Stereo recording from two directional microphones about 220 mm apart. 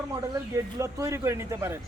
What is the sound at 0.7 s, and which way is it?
Speech, 15° right (ahead or behind).